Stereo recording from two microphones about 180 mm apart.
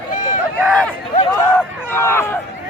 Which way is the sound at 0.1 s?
45° left (ahead or behind).